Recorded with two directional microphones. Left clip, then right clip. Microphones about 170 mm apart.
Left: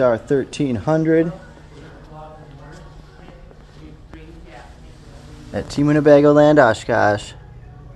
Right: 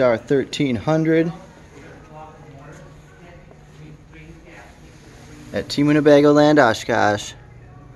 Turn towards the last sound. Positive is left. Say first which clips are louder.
# left 2 dB
turn(degrees=5)  # may be behind; listen again after turning